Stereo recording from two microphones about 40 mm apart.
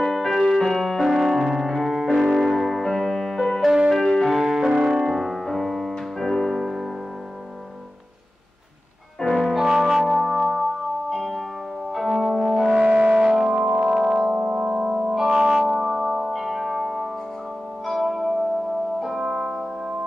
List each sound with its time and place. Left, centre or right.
0.0 s music: centre
1.0 s piano: centre
2.3 s music: centre
9.3 s music: centre
9.7 s music: centre
12.5 s music: centre
13.7 s music: right
13.9 s music: centre